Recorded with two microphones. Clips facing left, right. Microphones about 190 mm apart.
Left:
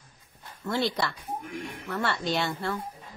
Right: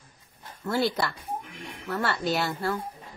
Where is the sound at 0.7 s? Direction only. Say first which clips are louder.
Right 2 dB; 5° right (ahead or behind).